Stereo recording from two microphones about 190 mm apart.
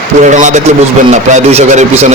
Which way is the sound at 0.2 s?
40° right (ahead or behind).